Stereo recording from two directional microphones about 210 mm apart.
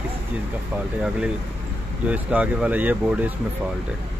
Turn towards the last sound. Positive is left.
turn(degrees=-10)  # may be behind; listen again after turning